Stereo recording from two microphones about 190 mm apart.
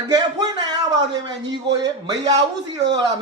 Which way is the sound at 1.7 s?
20° right (ahead or behind).